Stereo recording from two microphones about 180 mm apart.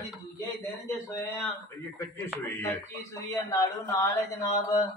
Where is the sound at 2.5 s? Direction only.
15° left (ahead or behind).